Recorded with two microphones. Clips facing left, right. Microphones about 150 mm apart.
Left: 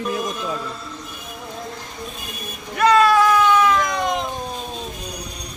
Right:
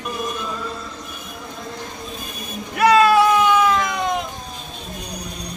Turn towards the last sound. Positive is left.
turn(degrees=-10)  # may be behind; listen again after turning